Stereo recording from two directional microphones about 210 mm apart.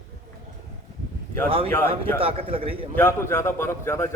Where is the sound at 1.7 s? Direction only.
10° left (ahead or behind).